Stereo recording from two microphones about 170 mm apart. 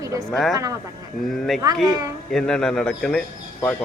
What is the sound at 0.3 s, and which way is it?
Speech, centre (ahead or behind).